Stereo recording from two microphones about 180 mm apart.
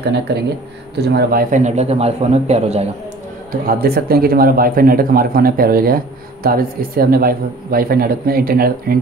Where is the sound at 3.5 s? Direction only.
55° right (ahead or behind).